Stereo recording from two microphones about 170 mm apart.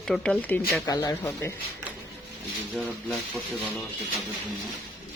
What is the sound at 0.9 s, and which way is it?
Speech, 20° left (ahead or behind).